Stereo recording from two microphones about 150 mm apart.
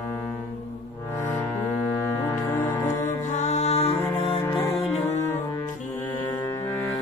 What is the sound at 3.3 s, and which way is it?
Music, 50° left (ahead or behind).